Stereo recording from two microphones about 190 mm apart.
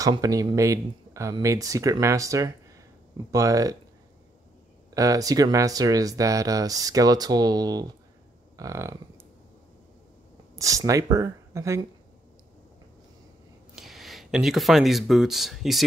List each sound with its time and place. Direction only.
0.0 s speech: 20° right (ahead or behind)
4.9 s speech: 20° right (ahead or behind)
10.5 s speech: 15° right (ahead or behind)
13.7 s speech: centre (ahead or behind)